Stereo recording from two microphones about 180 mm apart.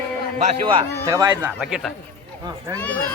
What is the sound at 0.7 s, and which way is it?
Speech, 20° right (ahead or behind).